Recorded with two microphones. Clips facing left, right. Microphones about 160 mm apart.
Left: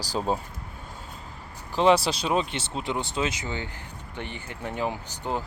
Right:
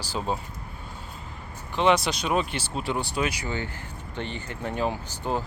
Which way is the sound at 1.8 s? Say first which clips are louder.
Left 2 dB; 35° left (ahead or behind).